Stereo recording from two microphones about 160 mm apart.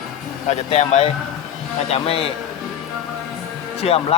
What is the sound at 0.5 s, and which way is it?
Speech, 45° left (ahead or behind).